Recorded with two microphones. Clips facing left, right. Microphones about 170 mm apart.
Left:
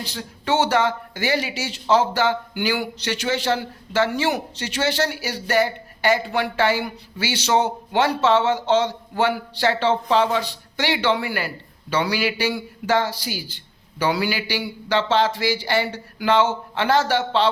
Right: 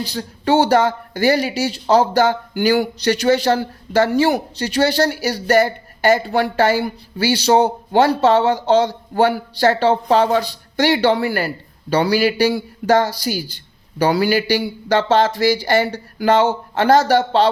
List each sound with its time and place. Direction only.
0.0 s speech: 35° right (ahead or behind)